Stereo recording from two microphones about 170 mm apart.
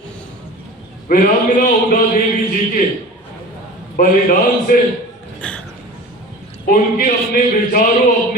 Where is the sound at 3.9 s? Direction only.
55° left (ahead or behind).